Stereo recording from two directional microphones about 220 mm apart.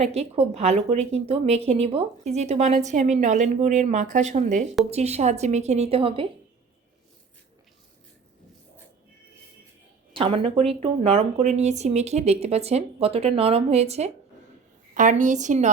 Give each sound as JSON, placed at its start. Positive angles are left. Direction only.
{"t": 0.0, "sound": "a woman's voice", "side_deg": -30}
{"t": 10.2, "sound": "a woman's voice", "side_deg": -25}